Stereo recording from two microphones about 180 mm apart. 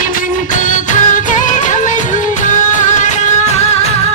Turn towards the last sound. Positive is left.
turn(degrees=35)  # may be behind; listen again after turning